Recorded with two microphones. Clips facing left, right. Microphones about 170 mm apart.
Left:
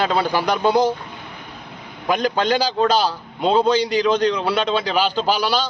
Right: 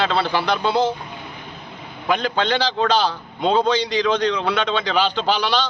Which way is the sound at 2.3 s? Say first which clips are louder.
Left 2 dB; 10° left (ahead or behind).